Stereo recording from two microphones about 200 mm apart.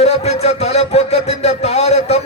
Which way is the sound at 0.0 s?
30° left (ahead or behind).